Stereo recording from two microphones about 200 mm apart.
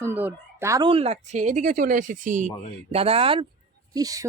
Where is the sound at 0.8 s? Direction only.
30° right (ahead or behind).